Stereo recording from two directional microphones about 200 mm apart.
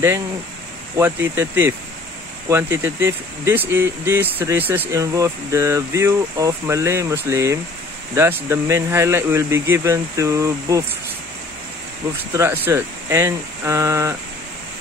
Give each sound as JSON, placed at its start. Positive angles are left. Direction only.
{"t": 0.9, "sound": "speech", "side_deg": -10}
{"t": 12.4, "sound": "speech", "side_deg": -15}